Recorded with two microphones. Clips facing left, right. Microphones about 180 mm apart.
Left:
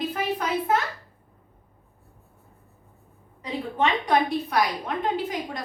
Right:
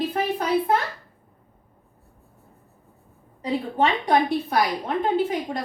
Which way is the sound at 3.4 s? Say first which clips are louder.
Right 3 dB; 35° right (ahead or behind).